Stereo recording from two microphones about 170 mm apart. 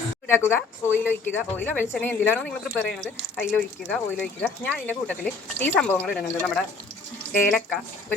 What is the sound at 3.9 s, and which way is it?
Speech, 10° left (ahead or behind).